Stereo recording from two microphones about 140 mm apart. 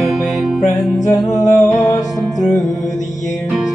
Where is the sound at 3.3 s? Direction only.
Centre (ahead or behind).